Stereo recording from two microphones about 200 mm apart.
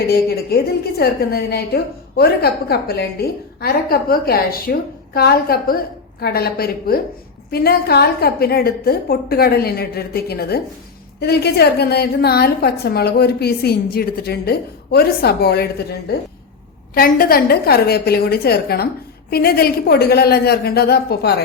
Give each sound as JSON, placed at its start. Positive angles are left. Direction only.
{"t": 0.1, "sound": "a woman's voice", "side_deg": 50}
{"t": 16.9, "sound": "a woman's voice", "side_deg": 45}